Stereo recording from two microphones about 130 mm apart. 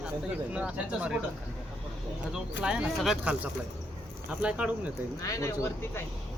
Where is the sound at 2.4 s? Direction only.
5° right (ahead or behind).